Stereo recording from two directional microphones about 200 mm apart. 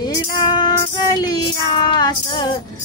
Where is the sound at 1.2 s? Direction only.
20° left (ahead or behind).